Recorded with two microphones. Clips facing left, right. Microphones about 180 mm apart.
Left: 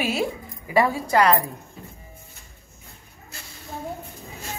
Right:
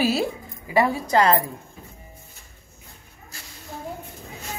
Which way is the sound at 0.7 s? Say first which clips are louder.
Even; 20° right (ahead or behind).